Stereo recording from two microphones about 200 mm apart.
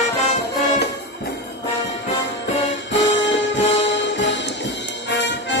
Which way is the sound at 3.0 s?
65° left (ahead or behind).